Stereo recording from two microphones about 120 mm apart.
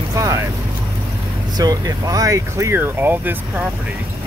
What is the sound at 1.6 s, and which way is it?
Speech, 30° right (ahead or behind).